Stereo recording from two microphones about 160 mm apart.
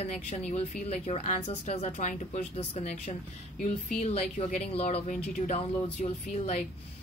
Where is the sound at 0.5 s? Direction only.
45° left (ahead or behind).